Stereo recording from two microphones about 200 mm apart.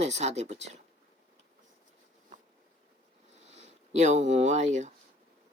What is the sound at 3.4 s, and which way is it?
Speech, 35° right (ahead or behind).